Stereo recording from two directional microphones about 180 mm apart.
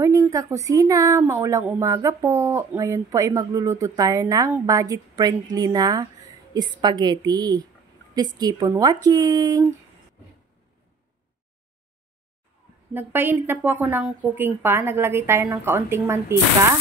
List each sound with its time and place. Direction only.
0.0 s a woman's voice: 15° right (ahead or behind)
12.9 s a woman's voice: 10° right (ahead or behind)